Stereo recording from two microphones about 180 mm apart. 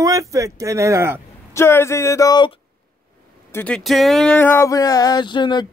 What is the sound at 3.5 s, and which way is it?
Speech, 10° left (ahead or behind).